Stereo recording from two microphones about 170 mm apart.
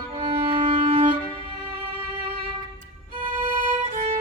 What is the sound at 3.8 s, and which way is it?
Violin, 35° right (ahead or behind).